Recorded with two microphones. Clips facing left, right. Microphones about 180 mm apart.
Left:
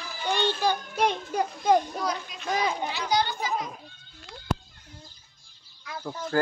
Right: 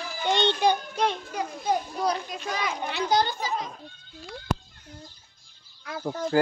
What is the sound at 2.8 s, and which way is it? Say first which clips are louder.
Children playing: right 2 dB; 55° right (ahead or behind).